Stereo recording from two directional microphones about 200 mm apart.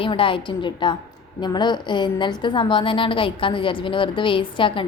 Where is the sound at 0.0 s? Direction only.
25° left (ahead or behind).